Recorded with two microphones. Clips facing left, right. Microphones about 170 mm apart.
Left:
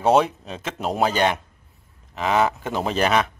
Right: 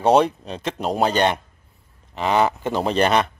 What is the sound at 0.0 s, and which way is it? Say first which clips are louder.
Speech: right 2 dB; 5° left (ahead or behind).